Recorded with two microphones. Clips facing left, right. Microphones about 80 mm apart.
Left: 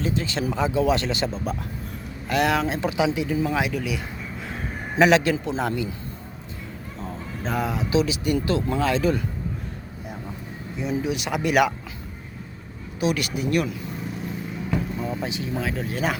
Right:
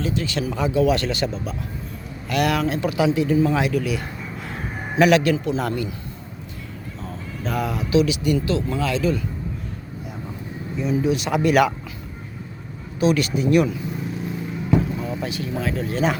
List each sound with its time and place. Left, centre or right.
0.0 s speech: left
7.0 s speech: left
10.8 s speech: centre
13.0 s speech: centre
15.2 s speech: left